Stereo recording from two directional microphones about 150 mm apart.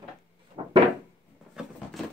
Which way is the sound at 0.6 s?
35° right (ahead or behind).